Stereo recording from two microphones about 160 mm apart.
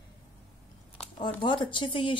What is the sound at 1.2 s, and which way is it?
Speech, 30° left (ahead or behind).